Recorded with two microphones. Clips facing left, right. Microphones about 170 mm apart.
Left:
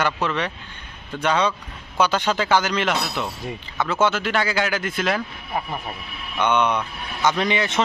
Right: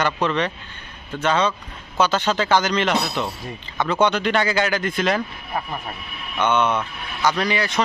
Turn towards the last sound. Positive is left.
turn(degrees=25)  # may be behind; listen again after turning